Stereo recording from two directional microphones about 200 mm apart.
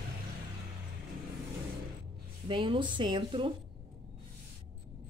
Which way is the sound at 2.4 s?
25° right (ahead or behind).